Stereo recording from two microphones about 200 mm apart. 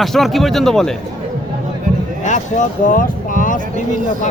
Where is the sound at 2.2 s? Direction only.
35° left (ahead or behind).